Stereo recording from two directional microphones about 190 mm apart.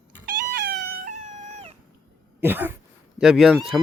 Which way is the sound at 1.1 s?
40° right (ahead or behind).